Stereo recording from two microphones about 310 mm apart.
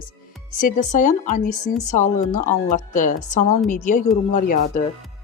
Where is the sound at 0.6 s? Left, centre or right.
Left.